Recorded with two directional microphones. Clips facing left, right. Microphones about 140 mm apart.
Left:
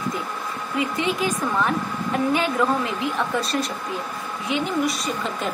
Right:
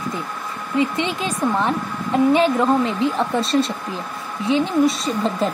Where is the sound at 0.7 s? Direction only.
25° right (ahead or behind).